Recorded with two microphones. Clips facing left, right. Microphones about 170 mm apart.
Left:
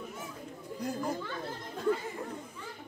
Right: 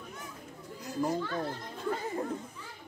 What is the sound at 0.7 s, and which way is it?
Speech, 55° left (ahead or behind).